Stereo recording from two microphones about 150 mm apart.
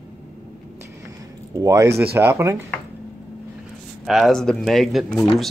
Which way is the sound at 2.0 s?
15° right (ahead or behind).